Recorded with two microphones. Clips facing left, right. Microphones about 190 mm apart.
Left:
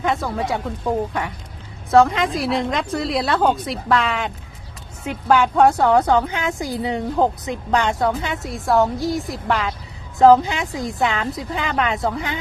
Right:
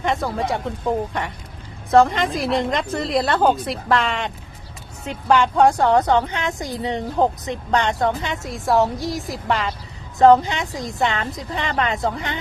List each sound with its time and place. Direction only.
0.0 s speech: centre (ahead or behind)
1.9 s speech: centre (ahead or behind)
5.3 s speech: 5° left (ahead or behind)